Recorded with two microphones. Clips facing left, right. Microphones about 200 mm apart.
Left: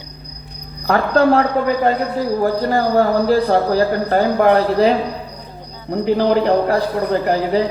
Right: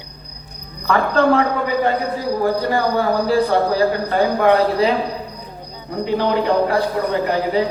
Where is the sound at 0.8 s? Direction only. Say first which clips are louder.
Left 2 dB; 40° left (ahead or behind).